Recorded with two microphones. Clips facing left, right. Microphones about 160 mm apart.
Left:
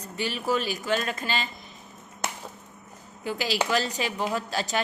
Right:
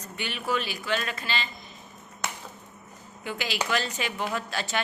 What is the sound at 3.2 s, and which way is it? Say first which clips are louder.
A woman's voice: left 3 dB; 35° left (ahead or behind).